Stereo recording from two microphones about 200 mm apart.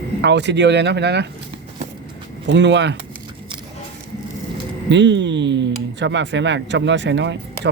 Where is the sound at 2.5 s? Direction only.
60° right (ahead or behind).